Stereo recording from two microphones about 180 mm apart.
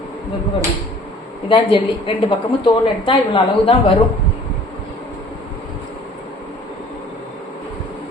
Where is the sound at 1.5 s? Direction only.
30° left (ahead or behind).